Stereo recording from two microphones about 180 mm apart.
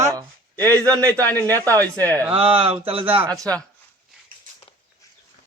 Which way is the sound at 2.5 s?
30° right (ahead or behind).